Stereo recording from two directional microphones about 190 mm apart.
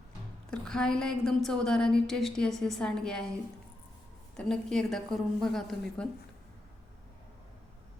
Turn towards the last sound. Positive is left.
turn(degrees=0)  # may be behind; listen again after turning